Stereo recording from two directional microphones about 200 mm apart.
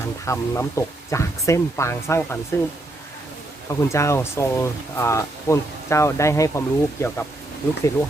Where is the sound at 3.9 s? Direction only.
15° left (ahead or behind).